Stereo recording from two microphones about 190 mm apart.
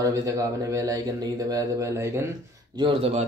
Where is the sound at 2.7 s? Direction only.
30° right (ahead or behind).